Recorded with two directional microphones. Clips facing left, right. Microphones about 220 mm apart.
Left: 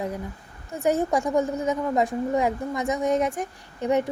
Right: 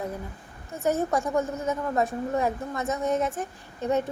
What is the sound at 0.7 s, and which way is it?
A woman's voice, 15° left (ahead or behind).